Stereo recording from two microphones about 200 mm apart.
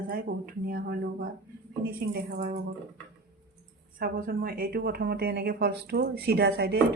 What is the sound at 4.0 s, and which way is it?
A woman's voice, 45° right (ahead or behind).